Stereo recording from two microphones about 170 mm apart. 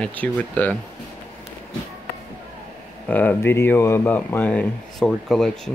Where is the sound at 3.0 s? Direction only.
10° left (ahead or behind).